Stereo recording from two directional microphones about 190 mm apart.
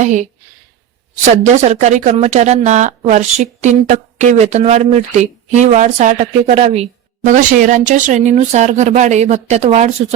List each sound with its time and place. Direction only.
0.0 s speech: 40° right (ahead or behind)